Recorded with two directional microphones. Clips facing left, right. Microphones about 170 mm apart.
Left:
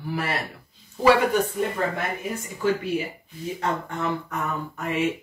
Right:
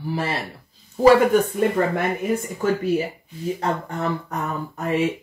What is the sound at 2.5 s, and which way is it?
Speech, 45° right (ahead or behind).